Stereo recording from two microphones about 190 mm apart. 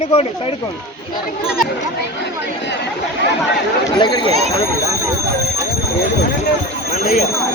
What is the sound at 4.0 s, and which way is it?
Speech, 25° left (ahead or behind).